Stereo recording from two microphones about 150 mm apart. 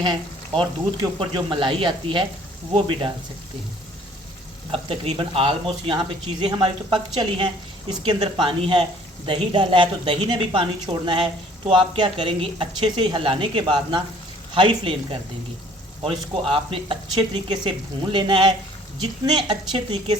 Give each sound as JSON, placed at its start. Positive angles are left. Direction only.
{"t": 0.0, "sound": "speech", "side_deg": -30}
{"t": 4.7, "sound": "speech", "side_deg": -35}